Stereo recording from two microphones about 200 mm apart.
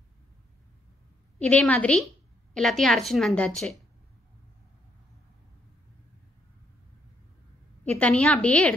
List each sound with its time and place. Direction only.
1.4 s a woman's voice: 5° left (ahead or behind)
7.8 s a woman's voice: 5° left (ahead or behind)